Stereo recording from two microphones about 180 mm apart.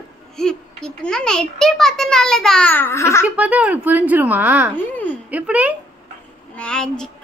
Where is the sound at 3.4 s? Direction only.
10° right (ahead or behind).